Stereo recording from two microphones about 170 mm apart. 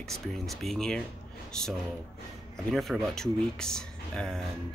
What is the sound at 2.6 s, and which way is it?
Speech, centre (ahead or behind).